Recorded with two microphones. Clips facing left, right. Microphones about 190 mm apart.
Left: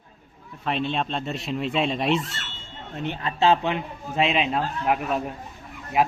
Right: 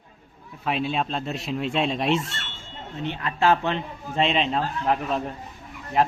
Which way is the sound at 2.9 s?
55° left (ahead or behind).